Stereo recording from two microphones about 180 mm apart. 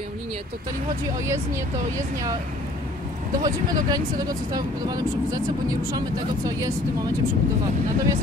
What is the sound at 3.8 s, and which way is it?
Speech, 20° right (ahead or behind).